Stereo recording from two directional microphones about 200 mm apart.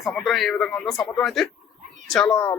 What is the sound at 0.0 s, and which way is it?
Speech, centre (ahead or behind).